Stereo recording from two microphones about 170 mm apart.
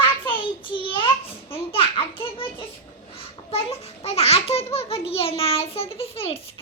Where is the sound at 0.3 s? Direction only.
30° left (ahead or behind).